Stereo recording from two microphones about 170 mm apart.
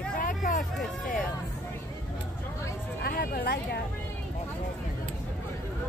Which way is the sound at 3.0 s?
65° left (ahead or behind).